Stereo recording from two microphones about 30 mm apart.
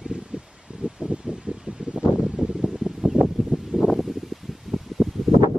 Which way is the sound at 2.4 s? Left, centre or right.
Right.